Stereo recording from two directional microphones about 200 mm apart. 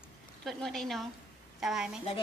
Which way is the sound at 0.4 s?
Centre (ahead or behind).